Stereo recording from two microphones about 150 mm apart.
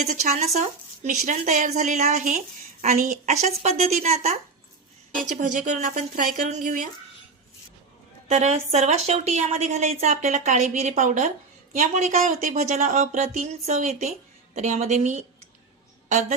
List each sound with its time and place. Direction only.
0.0 s a woman's voice: 50° right (ahead or behind)
3.4 s a woman's voice: 50° right (ahead or behind)
8.3 s a woman's voice: 45° right (ahead or behind)